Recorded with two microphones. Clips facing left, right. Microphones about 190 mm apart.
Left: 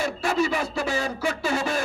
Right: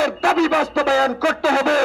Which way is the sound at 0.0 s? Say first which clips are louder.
Right 7 dB; 90° right.